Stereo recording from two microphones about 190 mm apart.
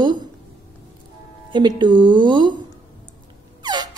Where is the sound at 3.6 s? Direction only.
20° right (ahead or behind).